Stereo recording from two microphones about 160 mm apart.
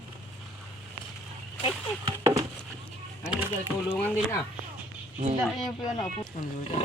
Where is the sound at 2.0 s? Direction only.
25° right (ahead or behind).